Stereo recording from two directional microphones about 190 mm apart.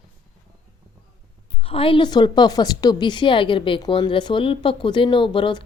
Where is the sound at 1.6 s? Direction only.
30° left (ahead or behind).